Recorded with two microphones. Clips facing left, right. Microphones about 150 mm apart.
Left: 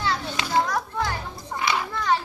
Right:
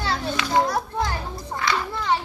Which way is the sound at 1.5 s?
20° left (ahead or behind).